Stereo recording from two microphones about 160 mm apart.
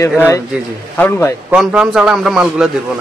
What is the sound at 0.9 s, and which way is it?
Speech, 10° left (ahead or behind).